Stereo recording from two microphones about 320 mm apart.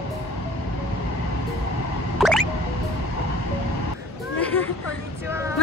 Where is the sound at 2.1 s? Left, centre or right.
Centre.